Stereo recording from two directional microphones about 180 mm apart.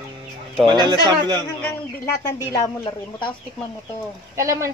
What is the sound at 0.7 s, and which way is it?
Speech, 25° right (ahead or behind).